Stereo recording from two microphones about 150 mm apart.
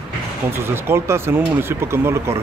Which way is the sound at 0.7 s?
15° right (ahead or behind).